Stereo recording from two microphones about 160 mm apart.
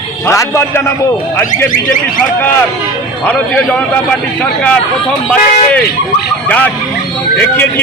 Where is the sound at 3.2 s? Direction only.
10° left (ahead or behind).